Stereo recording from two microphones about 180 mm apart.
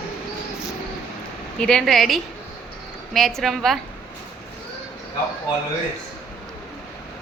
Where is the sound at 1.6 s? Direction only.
5° left (ahead or behind).